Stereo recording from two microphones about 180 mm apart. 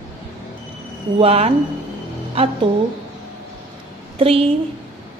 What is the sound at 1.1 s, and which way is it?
A woman's voice, 35° right (ahead or behind).